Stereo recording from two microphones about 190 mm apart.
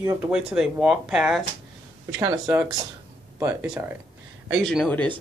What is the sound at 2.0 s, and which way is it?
Speech, 15° right (ahead or behind).